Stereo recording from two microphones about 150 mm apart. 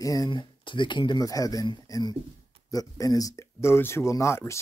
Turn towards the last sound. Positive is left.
turn(degrees=20)  # may be behind; listen again after turning